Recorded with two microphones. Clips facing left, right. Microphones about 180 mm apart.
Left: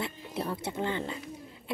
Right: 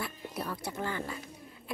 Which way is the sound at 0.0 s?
25° left (ahead or behind).